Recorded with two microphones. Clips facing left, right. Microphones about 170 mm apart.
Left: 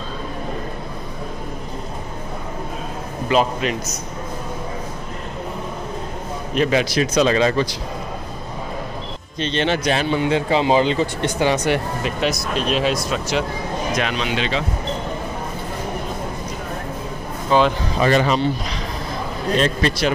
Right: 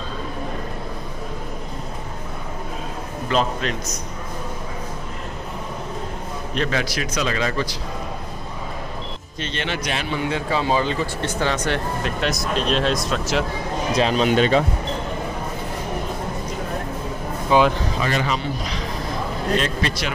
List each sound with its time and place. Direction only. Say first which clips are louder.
3.3 s speech: left 3 dB; 10° left (ahead or behind)
6.7 s speech: left 6 dB; 25° left (ahead or behind)
9.4 s speech: left 7 dB; 25° left (ahead or behind)
10.2 s speech: left 3 dB; 25° left (ahead or behind); by 13.5 s centre (ahead or behind)
13.9 s speech: right 8 dB; 35° right (ahead or behind)
17.5 s speech: even; 10° right (ahead or behind)
18.0 s a man's voice: left 8 dB; 35° left (ahead or behind)
19.6 s a man's voice: left 5 dB; 35° left (ahead or behind)